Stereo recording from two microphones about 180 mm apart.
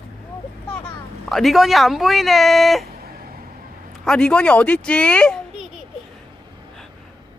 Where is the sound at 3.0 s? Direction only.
55° right (ahead or behind).